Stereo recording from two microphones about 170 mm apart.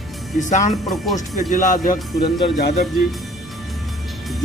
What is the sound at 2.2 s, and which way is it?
Speech, 65° left (ahead or behind).